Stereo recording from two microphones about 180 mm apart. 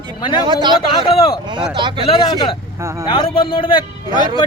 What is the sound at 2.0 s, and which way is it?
Speech, 25° left (ahead or behind).